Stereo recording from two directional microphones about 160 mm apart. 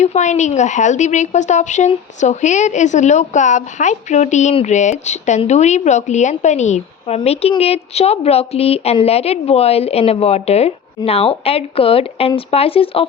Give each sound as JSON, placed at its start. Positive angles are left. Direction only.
{"t": 0.0, "sound": "a woman's voice", "side_deg": 45}
{"t": 7.2, "sound": "speech", "side_deg": 35}